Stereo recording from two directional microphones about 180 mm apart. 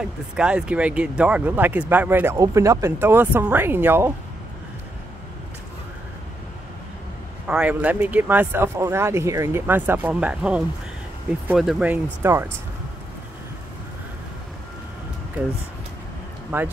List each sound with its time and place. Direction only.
0.4 s speech: 5° right (ahead or behind)
7.4 s speech: 5° right (ahead or behind)
16.5 s speech: 10° right (ahead or behind)